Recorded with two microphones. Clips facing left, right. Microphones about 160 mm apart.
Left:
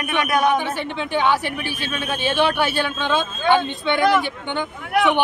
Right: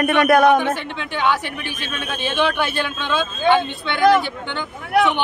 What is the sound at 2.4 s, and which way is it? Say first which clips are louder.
Speech: even; 10° left (ahead or behind).